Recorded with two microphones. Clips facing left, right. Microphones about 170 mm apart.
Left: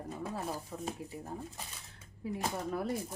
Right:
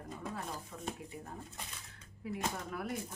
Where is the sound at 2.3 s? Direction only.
35° left (ahead or behind).